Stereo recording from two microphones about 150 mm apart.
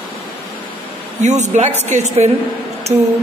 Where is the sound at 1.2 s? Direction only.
50° right (ahead or behind).